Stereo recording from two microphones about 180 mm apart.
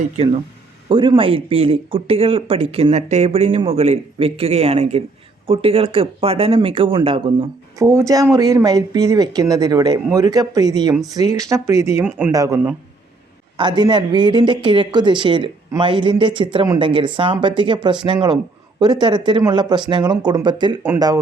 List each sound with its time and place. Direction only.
0.9 s speech: 30° right (ahead or behind)
13.6 s speech: 25° right (ahead or behind)